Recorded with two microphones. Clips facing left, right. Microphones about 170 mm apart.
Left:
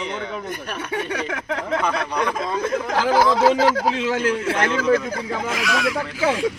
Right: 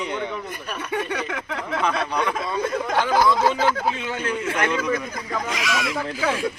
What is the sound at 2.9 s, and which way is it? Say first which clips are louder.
A man's voice: left 2 dB; 90° left.